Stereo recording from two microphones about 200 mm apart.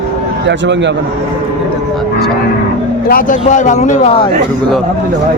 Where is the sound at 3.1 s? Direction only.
45° left (ahead or behind).